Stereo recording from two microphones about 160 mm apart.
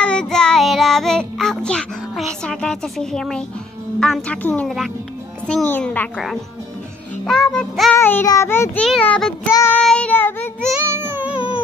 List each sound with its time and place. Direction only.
0.0 s child singing: 5° left (ahead or behind)
2.4 s a woman's voice: 5° left (ahead or behind)
4.0 s child singing: 5° left (ahead or behind)
7.2 s a woman's voice: centre (ahead or behind)
7.9 s child singing: 15° left (ahead or behind)
8.8 s a woman's voice: 5° left (ahead or behind)
9.5 s child singing: 20° left (ahead or behind)
9.8 s child singing: 5° left (ahead or behind)
10.8 s music: 15° right (ahead or behind)
11.3 s a sound: 35° left (ahead or behind)